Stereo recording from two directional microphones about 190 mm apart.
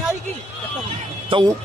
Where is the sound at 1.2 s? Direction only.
25° right (ahead or behind).